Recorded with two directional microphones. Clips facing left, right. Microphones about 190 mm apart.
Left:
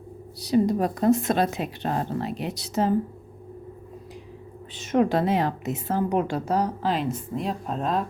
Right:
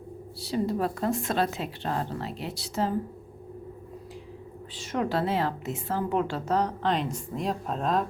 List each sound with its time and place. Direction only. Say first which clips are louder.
0.4 s a woman's voice: left 6 dB; 15° left (ahead or behind)
4.7 s a woman's voice: left 7 dB; 20° left (ahead or behind); by 8.0 s centre (ahead or behind)